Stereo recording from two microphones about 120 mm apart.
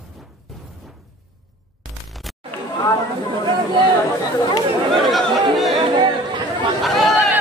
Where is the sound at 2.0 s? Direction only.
Centre (ahead or behind).